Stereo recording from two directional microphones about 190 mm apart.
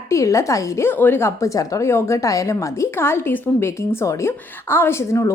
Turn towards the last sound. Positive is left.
turn(degrees=15)  # may be behind; listen again after turning